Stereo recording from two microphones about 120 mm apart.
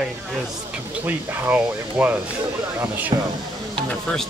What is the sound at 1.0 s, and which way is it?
Speech, 10° right (ahead or behind).